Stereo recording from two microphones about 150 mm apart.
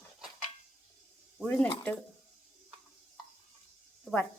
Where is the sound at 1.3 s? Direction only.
10° left (ahead or behind).